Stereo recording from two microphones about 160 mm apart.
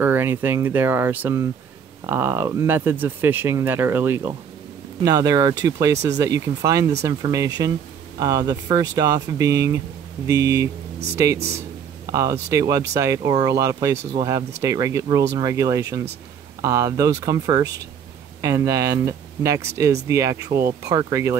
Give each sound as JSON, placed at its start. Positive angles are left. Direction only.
{"t": 0.0, "sound": "speech", "side_deg": -15}
{"t": 5.0, "sound": "speech", "side_deg": -25}